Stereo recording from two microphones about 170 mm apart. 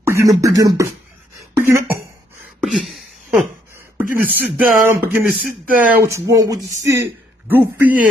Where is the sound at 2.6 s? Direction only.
Centre (ahead or behind).